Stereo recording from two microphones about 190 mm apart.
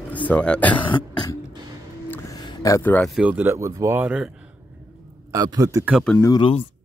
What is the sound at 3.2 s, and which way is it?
Speech, 10° right (ahead or behind).